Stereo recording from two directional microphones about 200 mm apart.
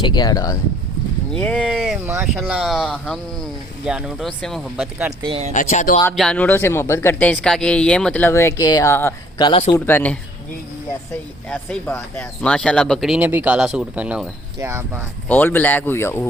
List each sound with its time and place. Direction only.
0.0 s speech: 20° left (ahead or behind)
1.3 s speech: 5° left (ahead or behind)
5.2 s speech: 30° right (ahead or behind)
5.5 s speech: 40° left (ahead or behind)
6.1 s speech: 5° left (ahead or behind)
9.4 s speech: 25° left (ahead or behind)
9.7 s speech: 10° left (ahead or behind); by 15.0 s 15° right (ahead or behind)
15.3 s speech: 10° left (ahead or behind)